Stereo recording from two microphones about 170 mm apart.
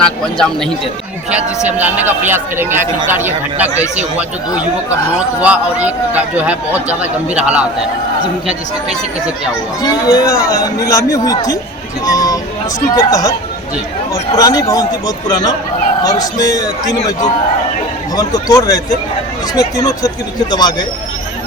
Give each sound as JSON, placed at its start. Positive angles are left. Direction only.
{"t": 0.0, "sound": "speech", "side_deg": 5}
{"t": 1.5, "sound": "a man's voice", "side_deg": -10}
{"t": 5.4, "sound": "a man's voice", "side_deg": -10}
{"t": 9.8, "sound": "a man's voice", "side_deg": 20}
{"t": 18.2, "sound": "a man's voice", "side_deg": 20}